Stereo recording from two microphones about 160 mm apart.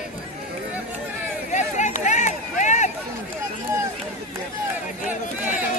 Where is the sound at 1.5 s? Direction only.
50° left (ahead or behind).